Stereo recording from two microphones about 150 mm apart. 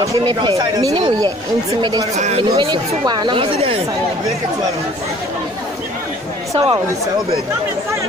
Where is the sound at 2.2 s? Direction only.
50° right (ahead or behind).